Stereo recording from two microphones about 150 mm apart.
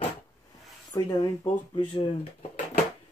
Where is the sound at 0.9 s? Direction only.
30° left (ahead or behind).